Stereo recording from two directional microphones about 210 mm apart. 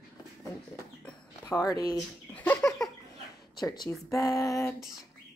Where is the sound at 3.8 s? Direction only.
15° left (ahead or behind).